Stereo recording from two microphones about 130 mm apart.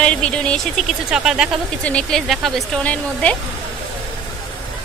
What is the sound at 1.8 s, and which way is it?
A woman's voice, 5° left (ahead or behind).